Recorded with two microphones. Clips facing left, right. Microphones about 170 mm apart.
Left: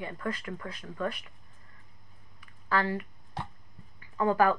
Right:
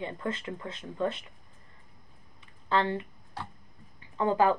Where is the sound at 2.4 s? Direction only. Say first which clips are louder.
Right 2 dB; 25° right (ahead or behind).